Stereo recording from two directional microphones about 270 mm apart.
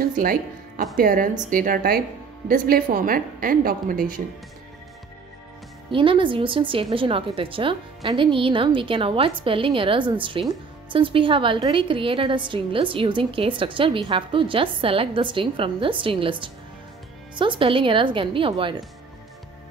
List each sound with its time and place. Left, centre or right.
0.0 s music: right
0.9 s a woman's voice: right
5.9 s a woman's voice: centre